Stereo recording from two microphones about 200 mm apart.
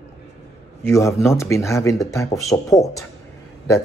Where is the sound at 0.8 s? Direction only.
15° left (ahead or behind).